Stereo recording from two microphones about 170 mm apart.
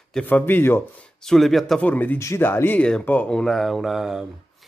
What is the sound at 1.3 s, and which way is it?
Speech, centre (ahead or behind).